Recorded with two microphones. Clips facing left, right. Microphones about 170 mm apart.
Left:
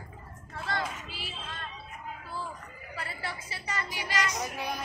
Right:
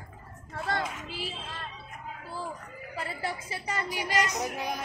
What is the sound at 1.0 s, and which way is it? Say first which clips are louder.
Music: right 4 dB; 45° right (ahead or behind).